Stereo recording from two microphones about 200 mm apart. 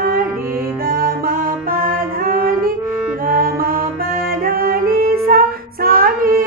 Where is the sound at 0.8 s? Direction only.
45° right (ahead or behind).